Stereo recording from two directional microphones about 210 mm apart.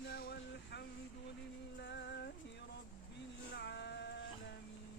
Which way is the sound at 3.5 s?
55° left (ahead or behind).